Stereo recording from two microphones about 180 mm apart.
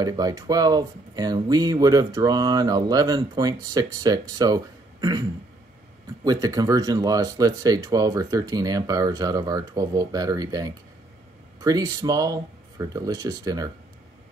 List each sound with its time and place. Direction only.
0.0 s speech: 20° right (ahead or behind)
6.2 s speech: 20° right (ahead or behind)